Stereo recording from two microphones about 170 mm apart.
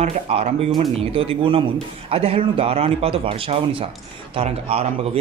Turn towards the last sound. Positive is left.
turn(degrees=-35)  # may be behind; listen again after turning